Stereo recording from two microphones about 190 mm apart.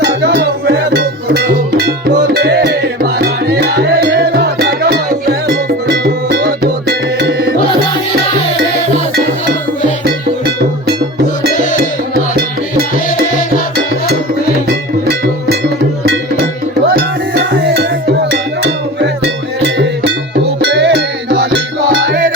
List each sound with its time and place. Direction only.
0.0 s music: 60° right (ahead or behind)
11.5 s music: 40° left (ahead or behind)
11.8 s music: 55° right (ahead or behind)
16.9 s music: 55° right (ahead or behind)